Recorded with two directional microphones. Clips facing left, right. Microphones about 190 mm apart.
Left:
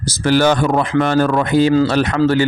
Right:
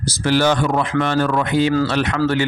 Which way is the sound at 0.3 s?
45° left (ahead or behind).